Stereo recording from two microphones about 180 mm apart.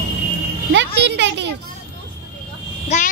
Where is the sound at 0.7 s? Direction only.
80° right.